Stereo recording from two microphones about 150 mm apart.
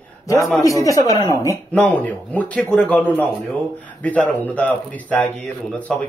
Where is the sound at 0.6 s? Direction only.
20° left (ahead or behind).